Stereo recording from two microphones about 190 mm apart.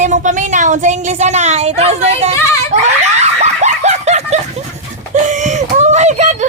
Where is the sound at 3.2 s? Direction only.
35° right (ahead or behind).